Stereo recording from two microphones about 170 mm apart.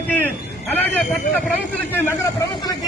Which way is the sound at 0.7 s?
10° left (ahead or behind).